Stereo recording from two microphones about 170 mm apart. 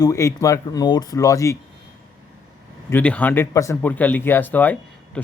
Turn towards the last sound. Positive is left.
turn(degrees=10)  # may be behind; listen again after turning